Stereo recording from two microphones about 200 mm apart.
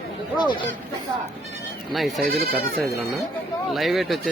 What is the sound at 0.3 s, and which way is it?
Speech, 20° left (ahead or behind).